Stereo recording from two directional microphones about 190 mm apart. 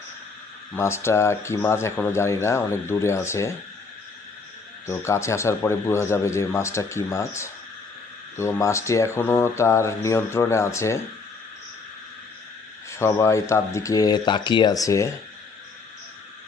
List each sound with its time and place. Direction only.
0.7 s speech: 15° left (ahead or behind)
4.9 s speech: 15° left (ahead or behind)
12.9 s speech: 15° left (ahead or behind)